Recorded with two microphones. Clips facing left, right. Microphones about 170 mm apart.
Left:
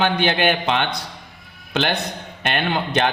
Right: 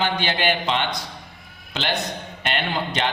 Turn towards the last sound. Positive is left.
turn(degrees=55)  # may be behind; listen again after turning